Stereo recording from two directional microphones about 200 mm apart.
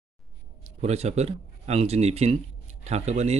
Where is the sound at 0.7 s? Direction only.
30° right (ahead or behind).